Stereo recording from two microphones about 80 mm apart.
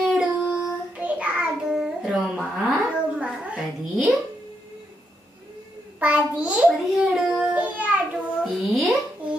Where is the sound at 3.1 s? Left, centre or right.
Centre.